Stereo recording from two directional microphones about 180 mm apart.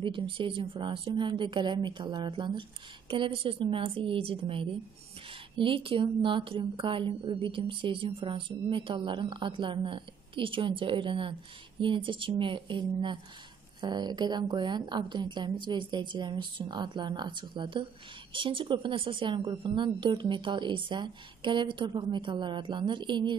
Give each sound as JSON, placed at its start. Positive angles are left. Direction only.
{"t": 0.0, "sound": "a woman's voice", "side_deg": -30}